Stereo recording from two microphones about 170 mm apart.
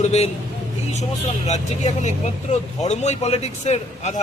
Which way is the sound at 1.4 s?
45° left (ahead or behind).